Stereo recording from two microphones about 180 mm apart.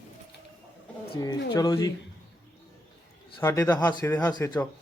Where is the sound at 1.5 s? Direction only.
20° left (ahead or behind).